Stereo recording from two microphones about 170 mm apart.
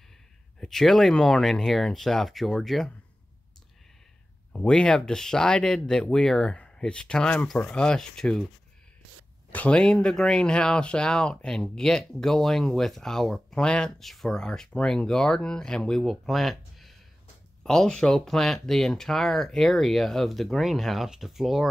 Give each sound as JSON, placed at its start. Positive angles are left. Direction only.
{"t": 0.6, "sound": "speech", "side_deg": 0}
{"t": 4.5, "sound": "speech", "side_deg": 5}
{"t": 9.5, "sound": "speech", "side_deg": 10}